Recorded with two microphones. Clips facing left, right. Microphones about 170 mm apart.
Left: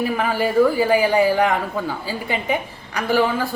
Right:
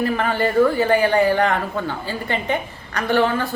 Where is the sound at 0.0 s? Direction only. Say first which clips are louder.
Right 1 dB; 10° left (ahead or behind).